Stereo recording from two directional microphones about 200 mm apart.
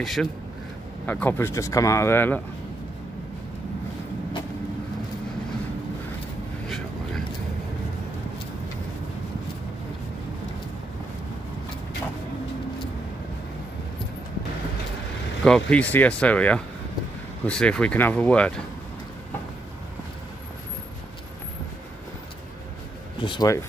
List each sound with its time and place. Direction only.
0.0 s speech: centre (ahead or behind)
15.4 s speech: 5° left (ahead or behind)
23.2 s speech: 20° left (ahead or behind)